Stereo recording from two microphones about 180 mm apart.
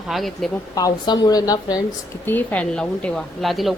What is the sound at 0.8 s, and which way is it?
A woman's voice, 20° left (ahead or behind).